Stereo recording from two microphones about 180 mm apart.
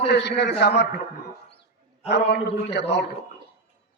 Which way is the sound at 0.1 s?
70° left (ahead or behind).